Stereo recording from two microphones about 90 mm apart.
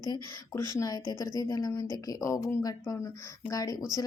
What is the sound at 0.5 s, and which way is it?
A woman's voice, 40° left (ahead or behind).